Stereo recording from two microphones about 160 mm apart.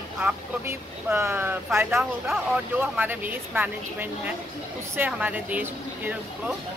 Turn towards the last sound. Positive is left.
turn(degrees=-10)  # may be behind; listen again after turning